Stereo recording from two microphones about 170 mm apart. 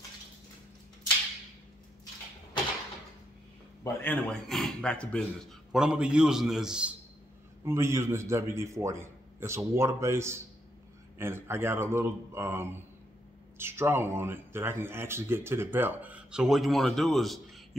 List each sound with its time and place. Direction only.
3.8 s a man's voice: 10° left (ahead or behind)
7.6 s speech: 15° right (ahead or behind); by 17.4 s centre (ahead or behind)